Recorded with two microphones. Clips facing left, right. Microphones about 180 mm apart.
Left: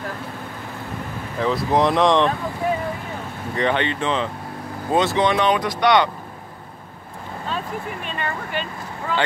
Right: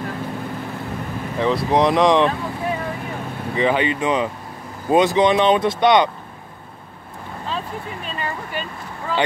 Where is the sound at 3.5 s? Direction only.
5° right (ahead or behind).